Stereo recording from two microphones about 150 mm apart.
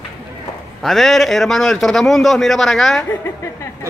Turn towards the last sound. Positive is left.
turn(degrees=20)  # may be behind; listen again after turning